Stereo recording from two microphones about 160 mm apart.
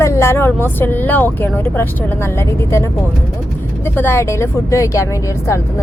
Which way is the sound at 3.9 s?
15° left (ahead or behind).